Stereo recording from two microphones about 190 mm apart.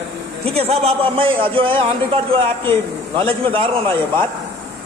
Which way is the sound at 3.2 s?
30° right (ahead or behind).